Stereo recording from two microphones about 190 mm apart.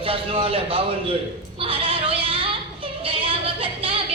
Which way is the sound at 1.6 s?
30° right (ahead or behind).